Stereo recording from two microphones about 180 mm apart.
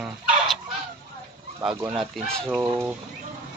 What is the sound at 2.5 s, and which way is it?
Speech, 10° right (ahead or behind).